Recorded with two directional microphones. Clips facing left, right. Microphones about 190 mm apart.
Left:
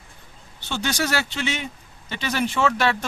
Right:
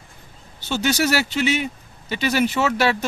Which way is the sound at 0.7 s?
10° right (ahead or behind).